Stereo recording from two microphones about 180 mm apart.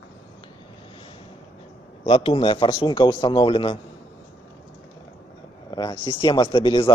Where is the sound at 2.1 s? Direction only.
30° left (ahead or behind).